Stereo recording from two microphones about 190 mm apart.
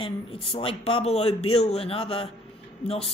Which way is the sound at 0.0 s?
30° left (ahead or behind).